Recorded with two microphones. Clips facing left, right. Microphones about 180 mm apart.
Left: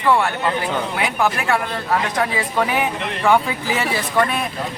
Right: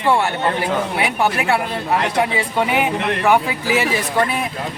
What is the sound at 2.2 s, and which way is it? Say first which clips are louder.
Speech: right 1 dB; 20° right (ahead or behind).